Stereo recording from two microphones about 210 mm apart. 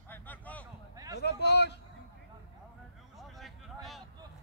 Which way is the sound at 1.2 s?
55° left (ahead or behind).